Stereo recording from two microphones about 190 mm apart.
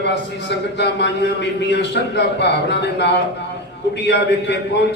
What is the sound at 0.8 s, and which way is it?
A man's voice, 65° left (ahead or behind).